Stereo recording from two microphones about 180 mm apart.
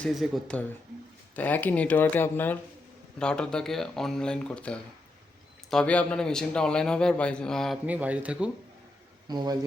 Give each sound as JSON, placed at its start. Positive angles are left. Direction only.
{"t": 0.0, "sound": "a man's voice", "side_deg": 0}
{"t": 7.9, "sound": "speech", "side_deg": -10}
{"t": 9.2, "sound": "speech", "side_deg": -20}